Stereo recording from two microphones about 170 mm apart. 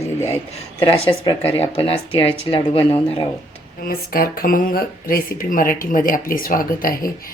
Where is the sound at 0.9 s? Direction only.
30° left (ahead or behind).